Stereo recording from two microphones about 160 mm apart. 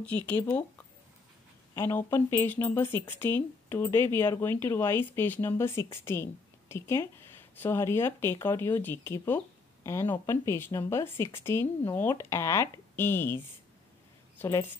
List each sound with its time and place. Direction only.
0.0 s speech: 10° left (ahead or behind)
1.8 s speech: 15° left (ahead or behind)
14.4 s speech: 15° left (ahead or behind)